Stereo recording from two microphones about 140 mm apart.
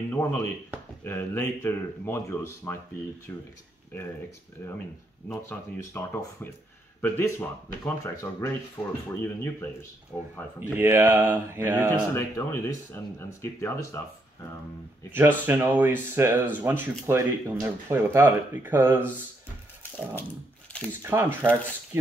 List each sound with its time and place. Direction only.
0.1 s speech: 15° left (ahead or behind)
4.6 s speech: 15° left (ahead or behind)
10.1 s speech: 5° right (ahead or behind)
10.8 s speech: 20° right (ahead or behind)
11.9 s speech: 20° left (ahead or behind)
15.0 s speech: 15° right (ahead or behind)
21.0 s speech: 15° right (ahead or behind)